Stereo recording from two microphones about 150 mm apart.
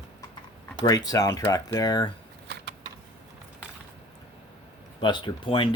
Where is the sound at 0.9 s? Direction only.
25° left (ahead or behind).